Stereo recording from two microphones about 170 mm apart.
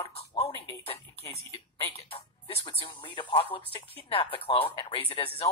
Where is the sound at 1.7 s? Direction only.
35° left (ahead or behind).